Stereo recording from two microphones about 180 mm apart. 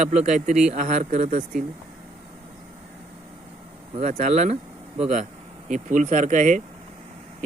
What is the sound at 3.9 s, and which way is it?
Speech, 40° right (ahead or behind).